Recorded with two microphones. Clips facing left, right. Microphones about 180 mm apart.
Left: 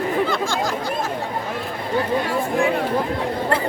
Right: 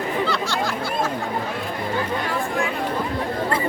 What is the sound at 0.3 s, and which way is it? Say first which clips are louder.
Chatter: left 2 dB; 50° left (ahead or behind).